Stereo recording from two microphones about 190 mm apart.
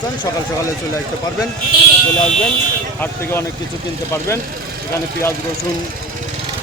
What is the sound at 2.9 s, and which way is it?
Speech, 10° left (ahead or behind).